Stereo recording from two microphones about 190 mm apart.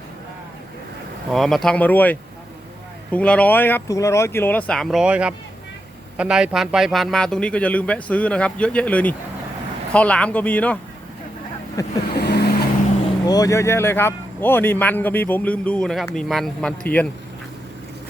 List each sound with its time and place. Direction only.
1.3 s a man's voice: centre (ahead or behind)
11.8 s a man's voice: 15° left (ahead or behind)
12.1 s vehicle: 60° left (ahead or behind)
13.2 s a man's voice: 20° left (ahead or behind)